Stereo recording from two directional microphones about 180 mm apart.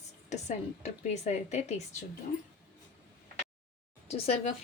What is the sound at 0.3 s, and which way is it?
A woman's voice, 40° left (ahead or behind).